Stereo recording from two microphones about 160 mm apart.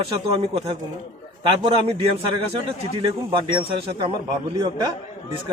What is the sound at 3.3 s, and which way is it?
Speech, 30° right (ahead or behind).